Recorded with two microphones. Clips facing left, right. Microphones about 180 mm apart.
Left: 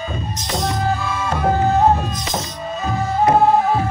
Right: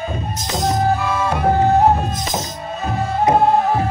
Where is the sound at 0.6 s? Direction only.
45° right (ahead or behind).